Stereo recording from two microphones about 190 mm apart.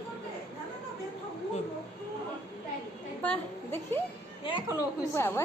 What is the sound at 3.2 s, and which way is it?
A woman's voice, 10° left (ahead or behind).